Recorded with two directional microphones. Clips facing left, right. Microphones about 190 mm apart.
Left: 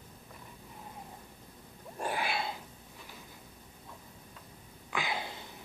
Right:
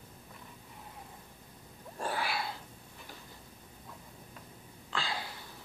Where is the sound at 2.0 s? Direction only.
20° left (ahead or behind).